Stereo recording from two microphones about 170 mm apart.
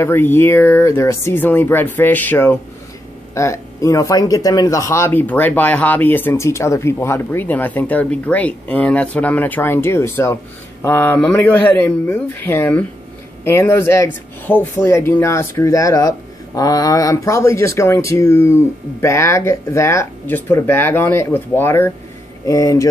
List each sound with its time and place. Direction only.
0.0 s speech: 15° left (ahead or behind)